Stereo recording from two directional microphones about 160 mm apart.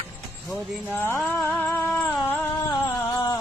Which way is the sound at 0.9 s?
10° left (ahead or behind).